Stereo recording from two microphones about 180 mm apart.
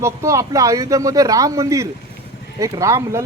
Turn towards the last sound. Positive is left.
turn(degrees=-15)  # may be behind; listen again after turning